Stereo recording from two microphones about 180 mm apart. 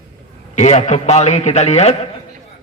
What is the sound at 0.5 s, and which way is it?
Speech, 40° left (ahead or behind).